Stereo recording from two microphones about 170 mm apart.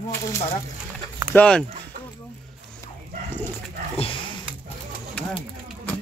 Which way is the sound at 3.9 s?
30° left (ahead or behind).